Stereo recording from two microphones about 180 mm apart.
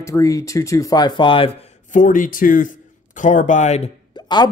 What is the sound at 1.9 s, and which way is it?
A man's voice, 45° left (ahead or behind).